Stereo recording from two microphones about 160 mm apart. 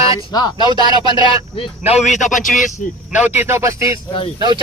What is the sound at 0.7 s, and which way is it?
Speech, 25° right (ahead or behind).